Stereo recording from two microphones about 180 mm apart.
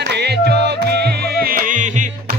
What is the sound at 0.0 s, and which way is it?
Music, 70° right (ahead or behind).